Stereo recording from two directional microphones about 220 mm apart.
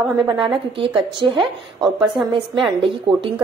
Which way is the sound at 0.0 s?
5° right (ahead or behind).